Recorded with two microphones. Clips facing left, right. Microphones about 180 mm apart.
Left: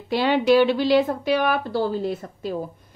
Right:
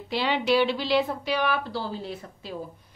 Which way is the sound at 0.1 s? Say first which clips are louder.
Left 6 dB; 50° left (ahead or behind).